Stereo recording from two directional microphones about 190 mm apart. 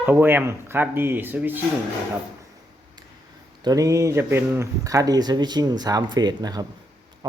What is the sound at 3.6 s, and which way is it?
Speech, 20° right (ahead or behind).